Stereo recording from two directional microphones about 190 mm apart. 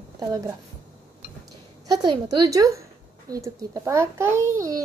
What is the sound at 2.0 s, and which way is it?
A woman's voice, 20° right (ahead or behind).